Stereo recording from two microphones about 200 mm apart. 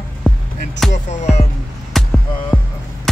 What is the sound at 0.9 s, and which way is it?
Music, 35° left (ahead or behind).